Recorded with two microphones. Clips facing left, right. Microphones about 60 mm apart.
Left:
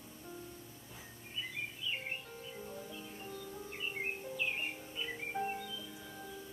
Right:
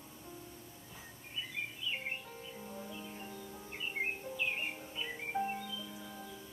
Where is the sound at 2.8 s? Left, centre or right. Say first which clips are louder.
Right 1 dB; centre.